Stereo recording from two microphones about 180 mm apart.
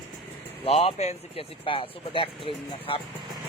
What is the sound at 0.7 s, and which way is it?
Speech, 35° left (ahead or behind).